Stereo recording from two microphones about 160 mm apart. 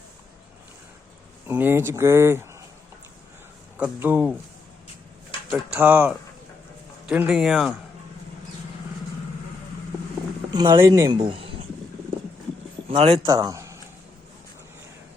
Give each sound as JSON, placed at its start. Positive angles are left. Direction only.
{"t": 1.5, "sound": "speech", "side_deg": -15}
{"t": 3.8, "sound": "speech", "side_deg": -10}
{"t": 5.5, "sound": "speech", "side_deg": 0}
{"t": 5.8, "sound": "speech", "side_deg": -10}
{"t": 10.5, "sound": "speech", "side_deg": -20}
{"t": 12.9, "sound": "speech", "side_deg": -35}
{"t": 13.2, "sound": "speech", "side_deg": -25}